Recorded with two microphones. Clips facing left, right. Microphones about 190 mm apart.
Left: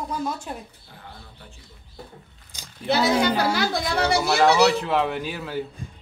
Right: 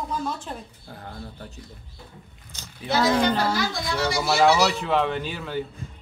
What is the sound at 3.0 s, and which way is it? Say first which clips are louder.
Speech: even; 10° left (ahead or behind).